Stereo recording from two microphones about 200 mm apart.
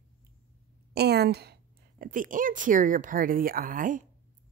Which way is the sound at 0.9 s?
55° right (ahead or behind).